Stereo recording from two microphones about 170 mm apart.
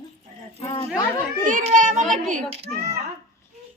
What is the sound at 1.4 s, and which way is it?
A child's voice, 45° right (ahead or behind).